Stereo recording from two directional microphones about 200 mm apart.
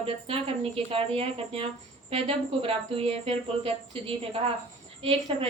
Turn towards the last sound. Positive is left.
turn(degrees=-25)  # may be behind; listen again after turning